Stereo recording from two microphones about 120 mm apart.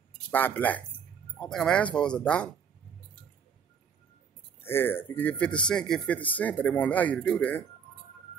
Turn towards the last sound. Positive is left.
turn(degrees=10)  # may be behind; listen again after turning